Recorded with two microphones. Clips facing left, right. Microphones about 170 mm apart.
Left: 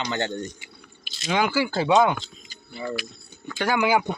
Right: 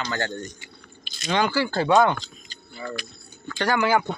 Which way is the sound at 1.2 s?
10° left (ahead or behind).